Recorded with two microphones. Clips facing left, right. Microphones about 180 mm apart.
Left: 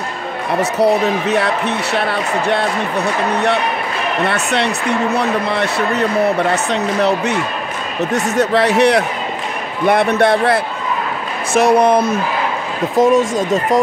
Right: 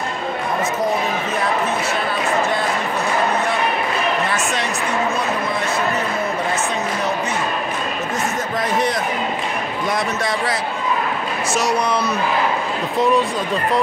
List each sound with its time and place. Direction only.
0.6 s a woman's voice: 75° left (ahead or behind)
4.3 s a woman's voice: 65° left (ahead or behind)
9.8 s a man's voice: 60° left (ahead or behind); by 13.7 s 45° left (ahead or behind)